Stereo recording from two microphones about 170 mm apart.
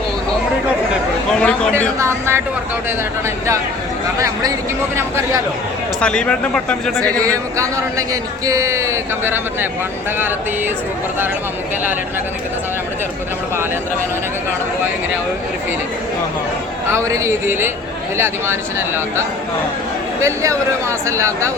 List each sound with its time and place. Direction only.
1.3 s speech: 5° left (ahead or behind)
2.0 s speech: 15° right (ahead or behind)
4.9 s speech: 15° right (ahead or behind)
6.0 s speech: 5° left (ahead or behind)
7.2 s a man's voice: 20° right (ahead or behind)
16.9 s speech: 15° right (ahead or behind)
20.2 s speech: 15° right (ahead or behind)